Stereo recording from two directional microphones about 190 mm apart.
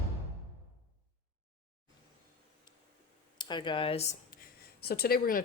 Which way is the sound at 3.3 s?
25° left (ahead or behind).